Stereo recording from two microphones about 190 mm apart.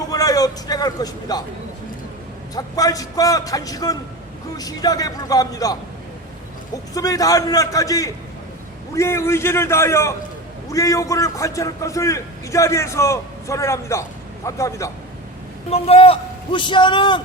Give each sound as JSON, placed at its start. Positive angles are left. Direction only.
{"t": 0.1, "sound": "a man's voice", "side_deg": 20}
{"t": 2.6, "sound": "a man's voice", "side_deg": 20}
{"t": 6.9, "sound": "a man's voice", "side_deg": 20}
{"t": 15.7, "sound": "a man's voice", "side_deg": 30}